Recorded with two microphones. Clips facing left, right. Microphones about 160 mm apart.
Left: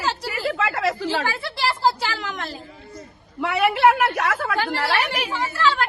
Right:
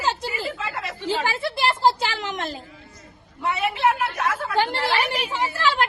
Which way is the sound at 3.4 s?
75° left (ahead or behind).